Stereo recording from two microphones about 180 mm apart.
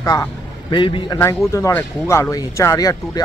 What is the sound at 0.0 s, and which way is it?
Speech, 20° left (ahead or behind).